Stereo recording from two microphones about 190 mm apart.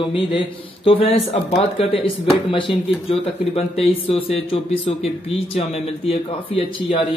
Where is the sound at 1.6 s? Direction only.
30° left (ahead or behind).